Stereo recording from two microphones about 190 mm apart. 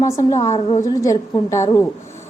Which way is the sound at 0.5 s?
35° left (ahead or behind).